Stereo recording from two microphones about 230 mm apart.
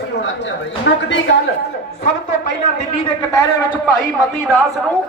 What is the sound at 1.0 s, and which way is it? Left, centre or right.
Speech, left.